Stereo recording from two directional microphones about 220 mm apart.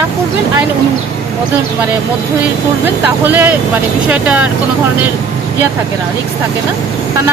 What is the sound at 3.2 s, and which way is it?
Speech, 10° right (ahead or behind).